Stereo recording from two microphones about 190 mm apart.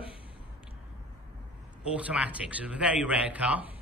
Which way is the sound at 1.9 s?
5° right (ahead or behind).